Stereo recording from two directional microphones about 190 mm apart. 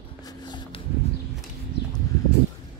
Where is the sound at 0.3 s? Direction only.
25° left (ahead or behind).